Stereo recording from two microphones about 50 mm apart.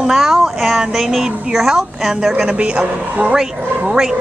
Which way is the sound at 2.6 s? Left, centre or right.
Right.